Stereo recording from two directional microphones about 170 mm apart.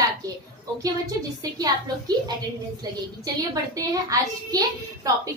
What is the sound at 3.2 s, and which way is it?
A child's voice, 20° right (ahead or behind).